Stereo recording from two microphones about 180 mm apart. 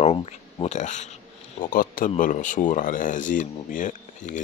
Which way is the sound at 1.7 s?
50° left (ahead or behind).